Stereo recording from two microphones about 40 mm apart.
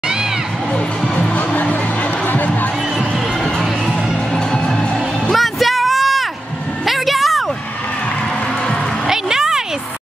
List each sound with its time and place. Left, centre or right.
1.3 s music: left
3.5 s music: centre
4.5 s music: centre
5.3 s a sound: centre
6.9 s music: centre
9.0 s a sound: centre